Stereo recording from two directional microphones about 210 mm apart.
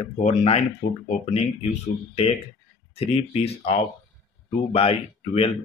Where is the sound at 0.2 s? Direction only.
30° left (ahead or behind).